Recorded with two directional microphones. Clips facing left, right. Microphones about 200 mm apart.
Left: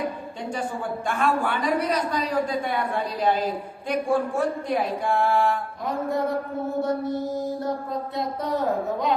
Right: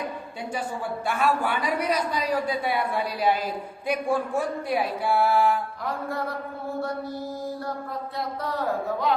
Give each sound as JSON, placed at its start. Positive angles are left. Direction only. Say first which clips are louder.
{"t": 1.0, "sound": "a woman's voice", "louder": "even", "side_deg": -10}
{"t": 6.7, "sound": "mantra", "louder": "left 6 dB", "side_deg": 20}